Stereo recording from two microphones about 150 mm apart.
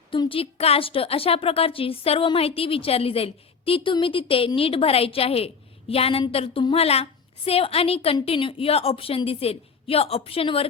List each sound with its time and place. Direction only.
0.1 s a woman's voice: 35° left (ahead or behind)